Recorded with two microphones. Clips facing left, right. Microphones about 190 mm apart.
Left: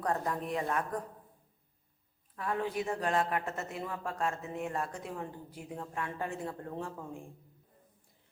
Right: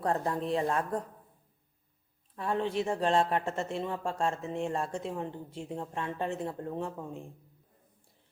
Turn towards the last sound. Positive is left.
turn(degrees=-20)  # may be behind; listen again after turning